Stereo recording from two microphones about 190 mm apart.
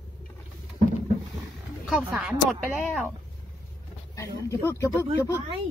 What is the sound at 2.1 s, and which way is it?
Speech, centre (ahead or behind).